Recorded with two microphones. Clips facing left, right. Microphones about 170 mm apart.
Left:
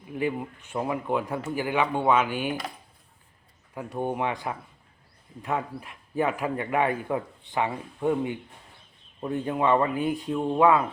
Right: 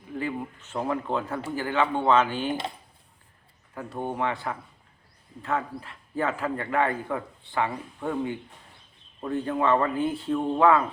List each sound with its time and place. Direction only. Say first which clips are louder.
0.2 s speech: left 3 dB; 15° left (ahead or behind)
3.8 s speech: left 1 dB; 15° left (ahead or behind)